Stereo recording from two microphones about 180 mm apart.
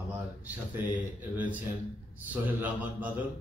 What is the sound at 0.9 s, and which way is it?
A man's voice, 10° right (ahead or behind).